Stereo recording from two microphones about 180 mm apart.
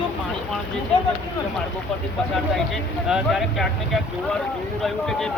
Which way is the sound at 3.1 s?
Centre (ahead or behind).